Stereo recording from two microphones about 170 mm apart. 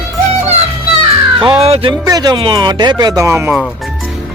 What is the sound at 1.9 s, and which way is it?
Speech, 20° right (ahead or behind).